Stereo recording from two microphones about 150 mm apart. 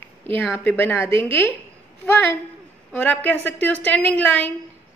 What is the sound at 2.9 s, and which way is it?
Speech, 10° left (ahead or behind).